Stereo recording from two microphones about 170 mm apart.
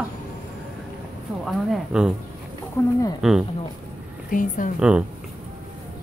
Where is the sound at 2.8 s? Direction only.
15° left (ahead or behind).